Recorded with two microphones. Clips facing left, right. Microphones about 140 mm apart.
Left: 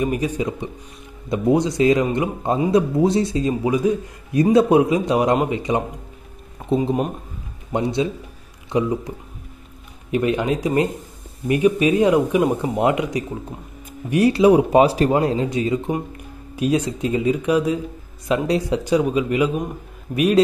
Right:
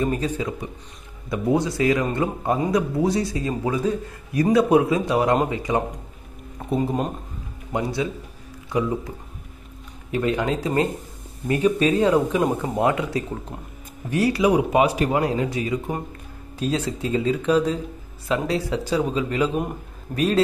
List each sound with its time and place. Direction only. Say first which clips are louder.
0.0 s a man's voice: left 2 dB; 15° left (ahead or behind)
10.1 s a man's voice: left 3 dB; 20° left (ahead or behind)